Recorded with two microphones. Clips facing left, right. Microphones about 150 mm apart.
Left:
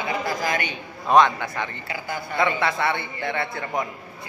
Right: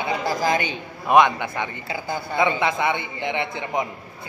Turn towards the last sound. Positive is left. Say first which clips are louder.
# right 1 dB
turn(degrees=-20)  # may be behind; listen again after turning